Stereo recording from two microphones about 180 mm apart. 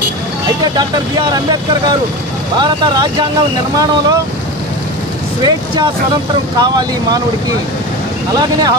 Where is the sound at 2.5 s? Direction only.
25° right (ahead or behind).